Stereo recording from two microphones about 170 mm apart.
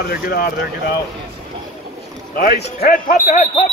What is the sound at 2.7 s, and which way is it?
Speech, 55° left (ahead or behind).